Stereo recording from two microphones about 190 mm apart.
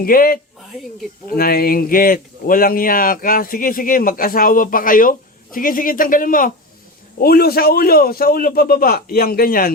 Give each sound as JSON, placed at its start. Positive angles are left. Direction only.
{"t": 0.0, "sound": "a man's voice", "side_deg": 50}
{"t": 1.4, "sound": "a man's voice", "side_deg": 50}